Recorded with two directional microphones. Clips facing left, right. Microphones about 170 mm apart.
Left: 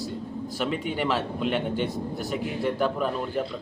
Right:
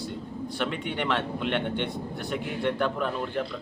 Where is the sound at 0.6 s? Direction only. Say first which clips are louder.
Left 3 dB; 5° left (ahead or behind).